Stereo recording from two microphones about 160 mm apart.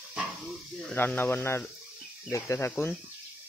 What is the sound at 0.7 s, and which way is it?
Speech, 10° left (ahead or behind).